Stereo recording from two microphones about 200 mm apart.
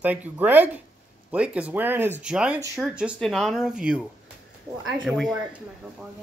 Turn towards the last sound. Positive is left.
turn(degrees=0)  # may be behind; listen again after turning